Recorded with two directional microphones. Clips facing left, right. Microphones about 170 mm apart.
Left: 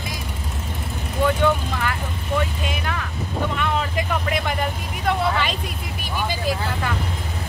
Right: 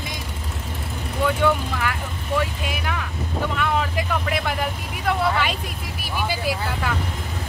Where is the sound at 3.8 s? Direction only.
5° right (ahead or behind).